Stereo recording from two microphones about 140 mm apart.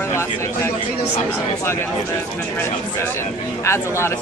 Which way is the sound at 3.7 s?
20° left (ahead or behind).